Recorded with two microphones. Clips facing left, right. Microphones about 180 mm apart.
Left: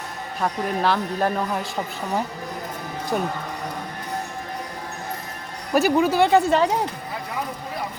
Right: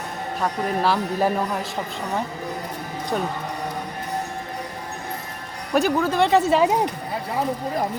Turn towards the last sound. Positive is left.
turn(degrees=-5)  # may be behind; listen again after turning